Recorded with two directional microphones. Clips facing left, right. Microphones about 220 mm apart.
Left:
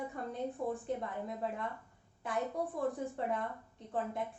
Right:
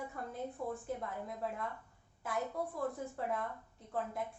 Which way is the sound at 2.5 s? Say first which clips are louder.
Left 3 dB; 20° left (ahead or behind).